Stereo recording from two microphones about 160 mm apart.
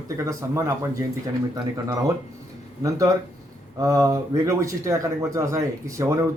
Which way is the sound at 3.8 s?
20° right (ahead or behind).